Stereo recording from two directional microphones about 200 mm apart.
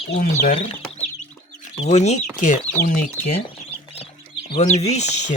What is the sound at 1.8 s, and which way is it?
Speech, 35° left (ahead or behind).